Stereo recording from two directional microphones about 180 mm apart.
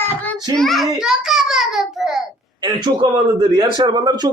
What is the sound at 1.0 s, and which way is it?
A child's voice, centre (ahead or behind).